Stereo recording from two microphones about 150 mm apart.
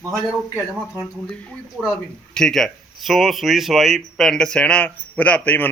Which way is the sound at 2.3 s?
5° left (ahead or behind).